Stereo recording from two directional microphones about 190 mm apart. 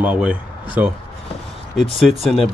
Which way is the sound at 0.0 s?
5° right (ahead or behind).